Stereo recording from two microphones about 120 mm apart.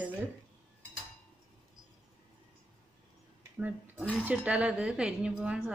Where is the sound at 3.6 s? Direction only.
10° right (ahead or behind).